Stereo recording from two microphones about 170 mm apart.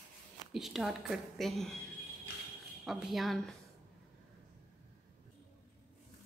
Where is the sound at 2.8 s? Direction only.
Centre (ahead or behind).